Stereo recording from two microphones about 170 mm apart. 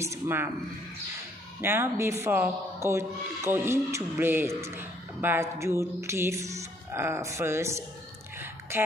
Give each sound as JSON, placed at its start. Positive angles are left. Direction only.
{"t": 0.0, "sound": "speech", "side_deg": -15}
{"t": 1.6, "sound": "speech", "side_deg": -15}
{"t": 8.4, "sound": "a sound", "side_deg": -15}